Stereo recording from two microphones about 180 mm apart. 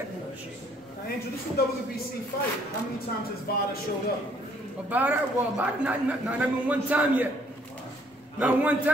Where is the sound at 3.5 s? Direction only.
55° left (ahead or behind).